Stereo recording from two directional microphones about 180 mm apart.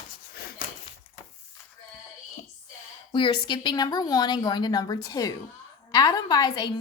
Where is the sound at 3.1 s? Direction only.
25° left (ahead or behind).